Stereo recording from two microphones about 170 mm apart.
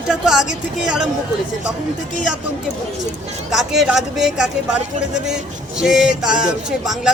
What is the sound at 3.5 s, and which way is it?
Speech, centre (ahead or behind).